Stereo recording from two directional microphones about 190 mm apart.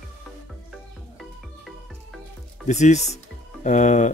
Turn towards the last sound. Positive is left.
turn(degrees=40)  # may be behind; listen again after turning